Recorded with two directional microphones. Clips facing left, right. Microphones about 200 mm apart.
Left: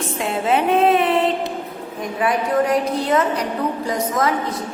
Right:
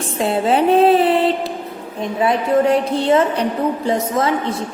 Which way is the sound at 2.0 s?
25° right (ahead or behind).